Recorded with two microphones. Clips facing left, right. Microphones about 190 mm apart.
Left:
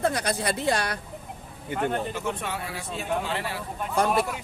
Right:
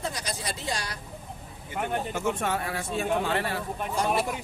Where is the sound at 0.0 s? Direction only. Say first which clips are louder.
Left 8 dB; 60° left (ahead or behind).